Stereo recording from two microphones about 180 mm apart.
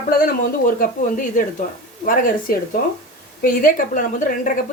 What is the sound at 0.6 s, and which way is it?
Speech, 50° left (ahead or behind).